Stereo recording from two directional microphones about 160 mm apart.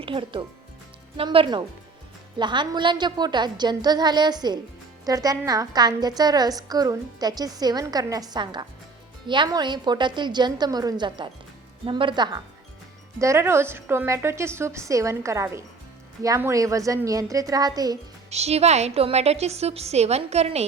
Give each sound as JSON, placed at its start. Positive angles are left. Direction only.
{"t": 0.0, "sound": "a woman's voice", "side_deg": -30}
{"t": 18.3, "sound": "a woman's voice", "side_deg": -40}